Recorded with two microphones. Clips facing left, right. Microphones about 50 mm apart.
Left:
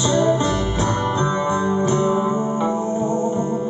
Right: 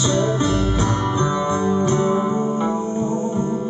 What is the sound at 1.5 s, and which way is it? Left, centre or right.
Music, centre.